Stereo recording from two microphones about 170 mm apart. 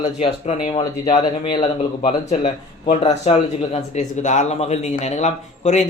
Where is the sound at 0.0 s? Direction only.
40° left (ahead or behind).